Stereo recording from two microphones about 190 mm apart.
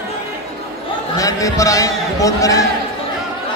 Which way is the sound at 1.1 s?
20° left (ahead or behind).